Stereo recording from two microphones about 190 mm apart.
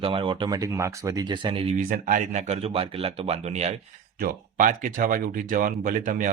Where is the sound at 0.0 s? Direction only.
25° right (ahead or behind).